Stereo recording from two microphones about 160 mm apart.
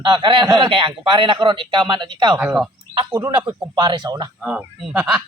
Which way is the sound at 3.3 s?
30° right (ahead or behind).